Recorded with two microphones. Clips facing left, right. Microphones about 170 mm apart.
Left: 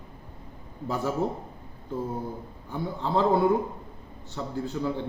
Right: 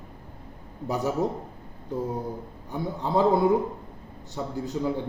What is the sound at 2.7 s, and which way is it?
Speech, 15° right (ahead or behind).